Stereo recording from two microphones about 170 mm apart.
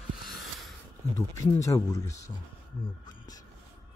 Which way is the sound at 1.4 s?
20° left (ahead or behind).